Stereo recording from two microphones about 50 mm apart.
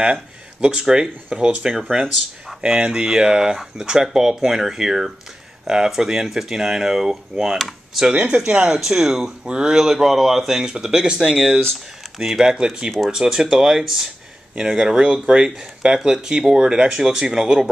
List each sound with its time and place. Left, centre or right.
0.0 s speech: right; by 8.1 s centre
8.3 s speech: centre